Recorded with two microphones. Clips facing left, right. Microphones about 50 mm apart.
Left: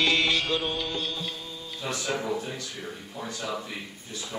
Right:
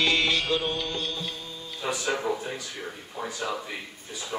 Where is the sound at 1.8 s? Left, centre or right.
Centre.